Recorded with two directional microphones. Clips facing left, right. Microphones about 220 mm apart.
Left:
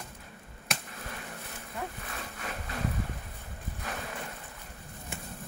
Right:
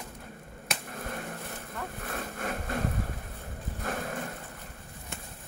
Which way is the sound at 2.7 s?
50° right (ahead or behind).